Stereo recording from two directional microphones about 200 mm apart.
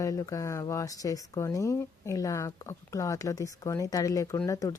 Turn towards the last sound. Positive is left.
turn(degrees=15)  # may be behind; listen again after turning